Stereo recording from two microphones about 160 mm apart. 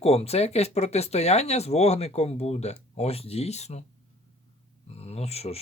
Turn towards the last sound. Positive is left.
turn(degrees=40)  # may be behind; listen again after turning